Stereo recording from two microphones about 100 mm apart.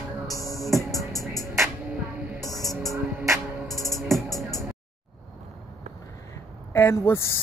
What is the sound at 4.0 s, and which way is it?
Music, centre (ahead or behind).